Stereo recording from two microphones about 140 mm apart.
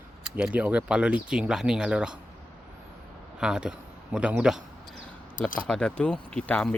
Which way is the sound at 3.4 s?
5° right (ahead or behind).